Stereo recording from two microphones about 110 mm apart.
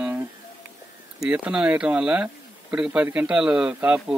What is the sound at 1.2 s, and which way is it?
Speech, 10° right (ahead or behind).